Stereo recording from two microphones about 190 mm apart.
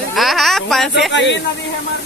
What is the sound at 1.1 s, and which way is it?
Speech, 70° left (ahead or behind).